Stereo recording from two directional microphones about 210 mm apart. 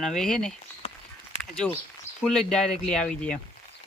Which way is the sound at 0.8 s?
30° left (ahead or behind).